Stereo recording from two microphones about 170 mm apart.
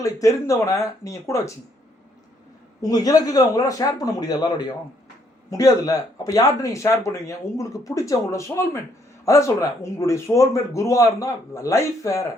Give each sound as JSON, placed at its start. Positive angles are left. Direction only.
{"t": 0.0, "sound": "speech", "side_deg": 20}
{"t": 2.8, "sound": "speech", "side_deg": 20}